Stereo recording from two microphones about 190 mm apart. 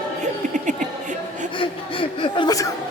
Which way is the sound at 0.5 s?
40° right (ahead or behind).